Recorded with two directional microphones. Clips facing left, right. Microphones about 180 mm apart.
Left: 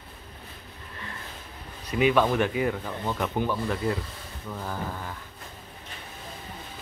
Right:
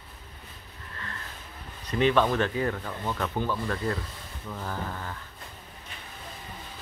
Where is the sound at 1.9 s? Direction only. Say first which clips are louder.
Left 1 dB; 10° left (ahead or behind).